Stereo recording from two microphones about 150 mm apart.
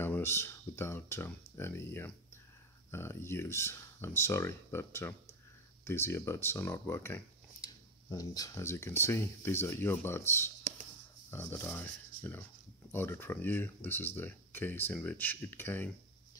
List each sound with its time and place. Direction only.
0.0 s speech: 15° left (ahead or behind)